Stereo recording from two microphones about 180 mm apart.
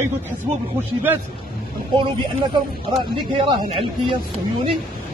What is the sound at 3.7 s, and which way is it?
Speech, 30° right (ahead or behind).